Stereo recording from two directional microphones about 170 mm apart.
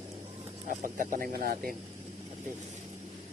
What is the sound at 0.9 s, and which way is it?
Speech, 55° right (ahead or behind).